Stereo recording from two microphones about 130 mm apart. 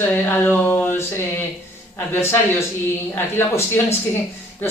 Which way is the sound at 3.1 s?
20° left (ahead or behind).